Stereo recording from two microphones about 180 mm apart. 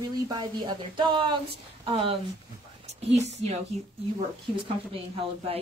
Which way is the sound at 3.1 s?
40° right (ahead or behind).